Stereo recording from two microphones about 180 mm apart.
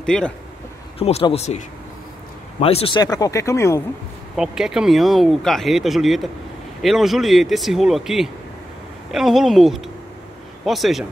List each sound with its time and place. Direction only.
0.0 s speech: 5° left (ahead or behind)
0.9 s speech: 35° left (ahead or behind)
2.6 s speech: 30° left (ahead or behind); by 3.8 s 15° left (ahead or behind)
4.4 s speech: 5° right (ahead or behind)